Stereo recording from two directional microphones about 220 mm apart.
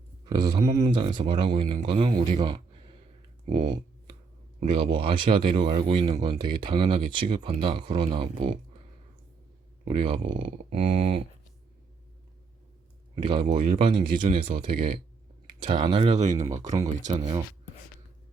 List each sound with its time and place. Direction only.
0.3 s speech: 20° right (ahead or behind)
4.6 s speech: 25° right (ahead or behind)
9.8 s speech: 25° right (ahead or behind)
13.1 s speech: 25° right (ahead or behind)
14.8 s speech: 45° right (ahead or behind)
15.6 s speech: 20° right (ahead or behind)
16.3 s speech: 15° right (ahead or behind)
16.8 s speech: 30° right (ahead or behind)
17.2 s speech: 20° right (ahead or behind)